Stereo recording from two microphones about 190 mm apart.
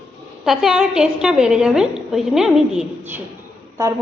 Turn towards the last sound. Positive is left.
turn(degrees=-15)  # may be behind; listen again after turning